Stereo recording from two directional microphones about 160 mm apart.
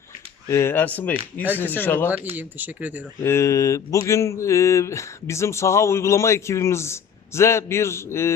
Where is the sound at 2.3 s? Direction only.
10° right (ahead or behind).